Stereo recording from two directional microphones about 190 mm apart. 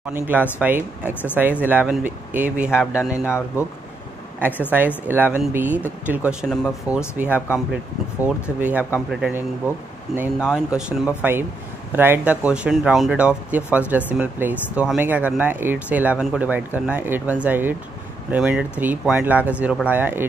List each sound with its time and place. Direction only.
0.1 s speech: 10° right (ahead or behind)
3.3 s speech: 15° left (ahead or behind)
4.4 s speech: 10° right (ahead or behind)